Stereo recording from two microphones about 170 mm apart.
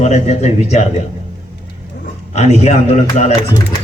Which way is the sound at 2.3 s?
40° left (ahead or behind).